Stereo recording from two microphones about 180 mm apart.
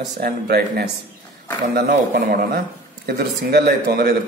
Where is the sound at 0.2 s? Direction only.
60° right (ahead or behind).